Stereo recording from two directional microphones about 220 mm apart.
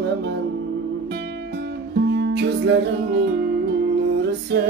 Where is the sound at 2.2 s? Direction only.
55° right (ahead or behind).